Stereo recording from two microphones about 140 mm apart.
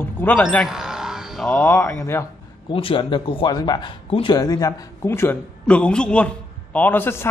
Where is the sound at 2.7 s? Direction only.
40° left (ahead or behind).